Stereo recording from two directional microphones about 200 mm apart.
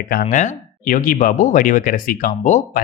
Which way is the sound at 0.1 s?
45° left (ahead or behind).